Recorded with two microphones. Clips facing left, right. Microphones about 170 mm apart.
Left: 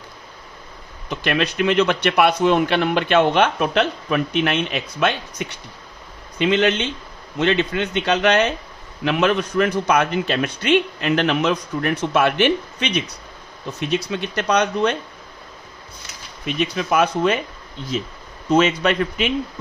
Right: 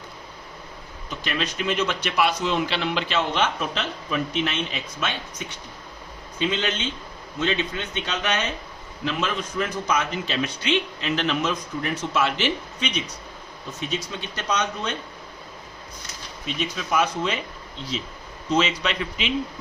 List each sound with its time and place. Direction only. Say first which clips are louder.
1.1 s a man's voice: left 7 dB; 65° left (ahead or behind)
16.5 s a man's voice: left 6 dB; 60° left (ahead or behind)